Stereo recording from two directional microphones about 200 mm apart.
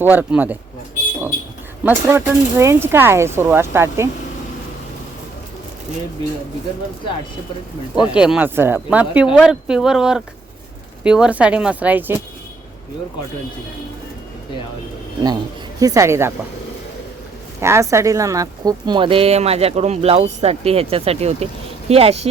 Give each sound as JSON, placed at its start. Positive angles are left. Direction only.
{"t": 0.0, "sound": "speech", "side_deg": -10}
{"t": 1.8, "sound": "speech", "side_deg": -15}
{"t": 7.9, "sound": "speech", "side_deg": -5}
{"t": 15.8, "sound": "speech", "side_deg": -15}
{"t": 17.6, "sound": "speech", "side_deg": -15}